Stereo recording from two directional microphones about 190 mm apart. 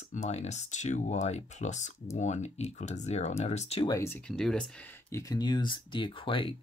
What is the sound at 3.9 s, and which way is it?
Speech, 15° left (ahead or behind).